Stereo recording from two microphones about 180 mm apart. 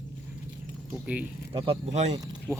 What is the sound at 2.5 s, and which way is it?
Speech, 10° right (ahead or behind).